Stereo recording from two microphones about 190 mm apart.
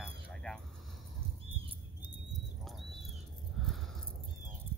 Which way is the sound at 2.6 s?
Centre (ahead or behind).